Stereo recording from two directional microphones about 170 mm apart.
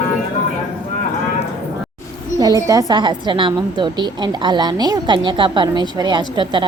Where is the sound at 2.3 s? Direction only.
20° right (ahead or behind).